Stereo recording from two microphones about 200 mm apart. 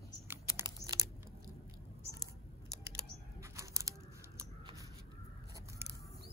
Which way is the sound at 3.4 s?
15° right (ahead or behind).